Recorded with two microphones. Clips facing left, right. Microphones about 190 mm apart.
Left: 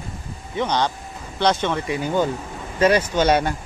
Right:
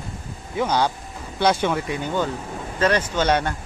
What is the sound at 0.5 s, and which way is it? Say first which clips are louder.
Speech: right 1 dB; 5° right (ahead or behind).